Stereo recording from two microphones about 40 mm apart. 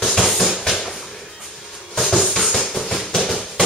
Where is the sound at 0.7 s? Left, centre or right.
Centre.